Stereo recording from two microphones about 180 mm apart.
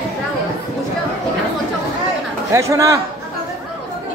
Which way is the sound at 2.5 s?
15° right (ahead or behind).